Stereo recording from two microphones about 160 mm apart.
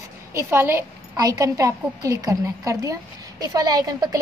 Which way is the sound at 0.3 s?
15° right (ahead or behind).